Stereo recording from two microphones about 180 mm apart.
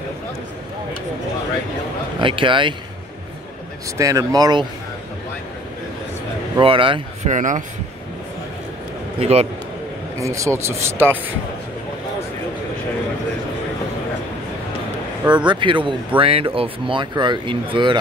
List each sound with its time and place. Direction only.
2.1 s speech: 30° right (ahead or behind)
4.0 s speech: 20° right (ahead or behind)
6.6 s speech: 30° right (ahead or behind)
7.2 s a man's voice: 45° right (ahead or behind)
9.2 s a man's voice: 35° right (ahead or behind)
10.2 s speech: 15° right (ahead or behind)
15.3 s speech: 25° right (ahead or behind)